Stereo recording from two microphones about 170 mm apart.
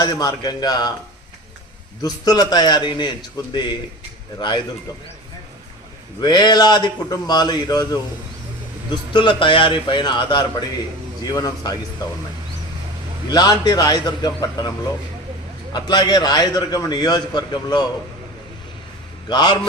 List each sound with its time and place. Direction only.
0.0 s a man's voice: 20° left (ahead or behind)
2.0 s a man's voice: 20° left (ahead or behind)
6.2 s a man's voice: 25° left (ahead or behind)
9.1 s a man's voice: 30° left (ahead or behind)
13.3 s a man's voice: 25° left (ahead or behind)
15.7 s a man's voice: 25° left (ahead or behind)
19.3 s a man's voice: 25° left (ahead or behind)